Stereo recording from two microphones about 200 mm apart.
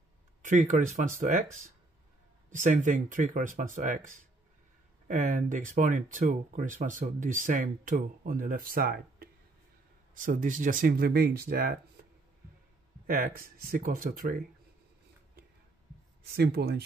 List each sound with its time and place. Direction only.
0.4 s speech: 40° right (ahead or behind)
13.0 s speech: 45° right (ahead or behind)
16.3 s speech: 55° right (ahead or behind)